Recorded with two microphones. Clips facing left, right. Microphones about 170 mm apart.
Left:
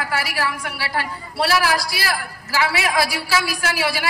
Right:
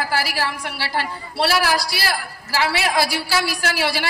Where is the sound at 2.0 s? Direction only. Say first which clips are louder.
Even; 30° right (ahead or behind).